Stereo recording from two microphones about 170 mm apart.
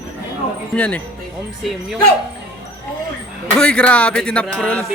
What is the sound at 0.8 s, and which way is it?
Speech, 10° left (ahead or behind).